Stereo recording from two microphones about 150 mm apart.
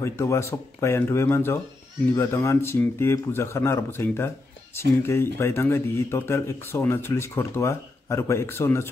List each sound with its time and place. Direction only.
0.0 s speech: 20° left (ahead or behind)